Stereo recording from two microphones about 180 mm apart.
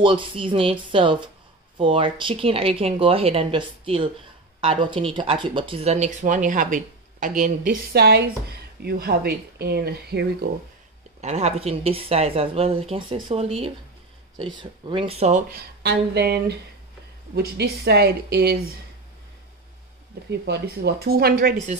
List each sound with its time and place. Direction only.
0.0 s speech: 30° right (ahead or behind); by 10.5 s 60° right (ahead or behind)
11.1 s speech: 40° right (ahead or behind)
15.5 s speech: 60° right (ahead or behind)
20.2 s speech: 70° right (ahead or behind); by 21.7 s 45° right (ahead or behind)